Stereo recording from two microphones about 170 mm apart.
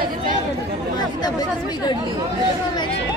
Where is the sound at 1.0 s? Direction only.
25° left (ahead or behind).